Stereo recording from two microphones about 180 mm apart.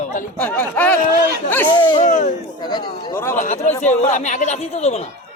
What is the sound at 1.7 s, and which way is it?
Speech, 25° left (ahead or behind).